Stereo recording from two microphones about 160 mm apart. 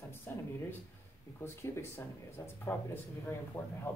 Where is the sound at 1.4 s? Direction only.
15° left (ahead or behind).